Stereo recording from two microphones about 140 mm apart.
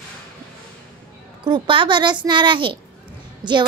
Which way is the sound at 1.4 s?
35° right (ahead or behind).